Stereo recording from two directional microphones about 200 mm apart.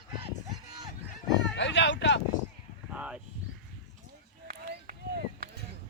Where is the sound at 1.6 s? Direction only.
65° left (ahead or behind).